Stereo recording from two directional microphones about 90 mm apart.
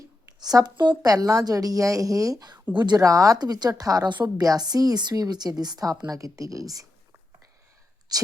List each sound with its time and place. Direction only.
0.3 s speech: 50° right (ahead or behind)
1.0 s a woman's voice: 40° right (ahead or behind)
2.7 s speech: 55° right (ahead or behind)
3.0 s a woman's voice: 40° right (ahead or behind)
8.1 s speech: 45° right (ahead or behind)